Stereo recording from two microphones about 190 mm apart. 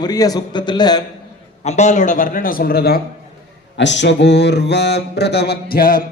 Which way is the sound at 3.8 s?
70° left (ahead or behind).